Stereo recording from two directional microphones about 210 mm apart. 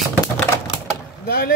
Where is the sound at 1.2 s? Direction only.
45° left (ahead or behind).